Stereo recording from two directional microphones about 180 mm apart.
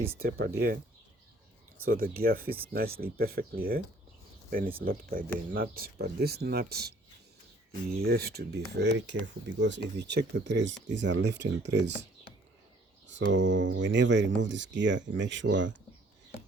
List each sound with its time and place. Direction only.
0.2 s speech: 60° right (ahead or behind)
1.8 s speech: 55° right (ahead or behind)
8.0 s speech: 60° right (ahead or behind); by 11.9 s 75° right (ahead or behind)
13.1 s speech: 85° right